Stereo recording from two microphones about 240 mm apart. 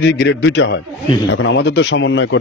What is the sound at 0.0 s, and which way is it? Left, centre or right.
Speech, left.